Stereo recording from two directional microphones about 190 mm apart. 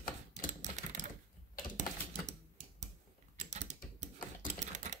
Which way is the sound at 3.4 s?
35° right (ahead or behind).